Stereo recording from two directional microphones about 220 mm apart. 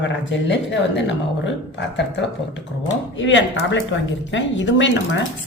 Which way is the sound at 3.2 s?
55° left (ahead or behind).